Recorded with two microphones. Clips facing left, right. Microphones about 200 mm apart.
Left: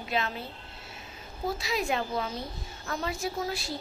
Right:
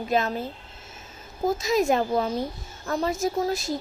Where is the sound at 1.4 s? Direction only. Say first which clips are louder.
Right 8 dB; 45° right (ahead or behind).